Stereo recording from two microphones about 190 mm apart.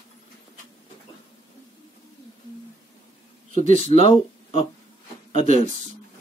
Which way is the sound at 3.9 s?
30° left (ahead or behind).